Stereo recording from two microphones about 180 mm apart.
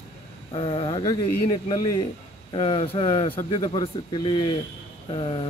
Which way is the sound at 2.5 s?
30° left (ahead or behind).